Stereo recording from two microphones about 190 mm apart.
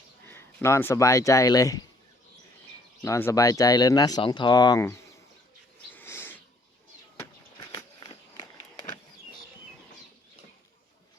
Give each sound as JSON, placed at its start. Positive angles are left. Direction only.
{"t": 0.3, "sound": "speech", "side_deg": 15}
{"t": 3.0, "sound": "speech", "side_deg": 15}
{"t": 5.9, "sound": "a sound", "side_deg": 10}
{"t": 7.6, "sound": "walk", "side_deg": 20}